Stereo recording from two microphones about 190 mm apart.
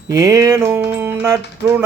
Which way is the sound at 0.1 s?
15° right (ahead or behind).